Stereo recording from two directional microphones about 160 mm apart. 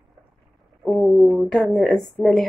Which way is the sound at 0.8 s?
Centre (ahead or behind).